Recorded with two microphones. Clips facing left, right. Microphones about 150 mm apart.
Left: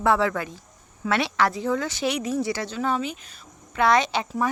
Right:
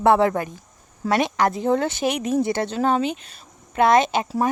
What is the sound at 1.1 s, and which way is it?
Speech, 45° right (ahead or behind).